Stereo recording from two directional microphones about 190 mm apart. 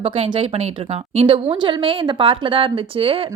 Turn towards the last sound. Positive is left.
turn(degrees=-30)  # may be behind; listen again after turning